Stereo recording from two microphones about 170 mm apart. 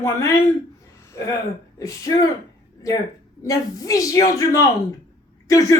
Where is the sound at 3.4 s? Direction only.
20° left (ahead or behind).